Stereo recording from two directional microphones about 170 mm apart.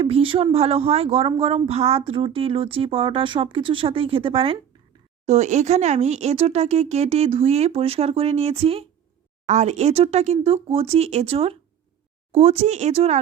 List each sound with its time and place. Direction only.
0.0 s speech: 35° right (ahead or behind)